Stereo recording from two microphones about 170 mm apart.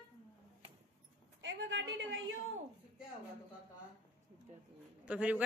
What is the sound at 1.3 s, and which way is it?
Speech, 90° right.